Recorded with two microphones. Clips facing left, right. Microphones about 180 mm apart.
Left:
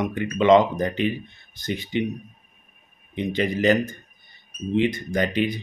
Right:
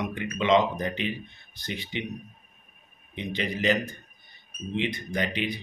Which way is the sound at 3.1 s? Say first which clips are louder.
Left 7 dB; 50° left (ahead or behind).